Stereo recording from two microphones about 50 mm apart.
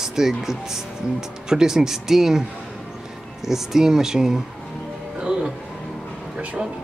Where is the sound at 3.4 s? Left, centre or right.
Centre.